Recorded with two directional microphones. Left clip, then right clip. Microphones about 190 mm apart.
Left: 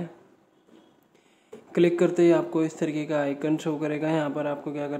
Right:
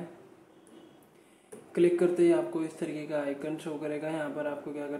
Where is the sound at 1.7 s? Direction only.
30° left (ahead or behind).